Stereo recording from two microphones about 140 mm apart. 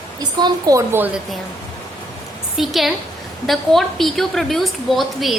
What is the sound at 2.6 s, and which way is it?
A woman's voice, centre (ahead or behind).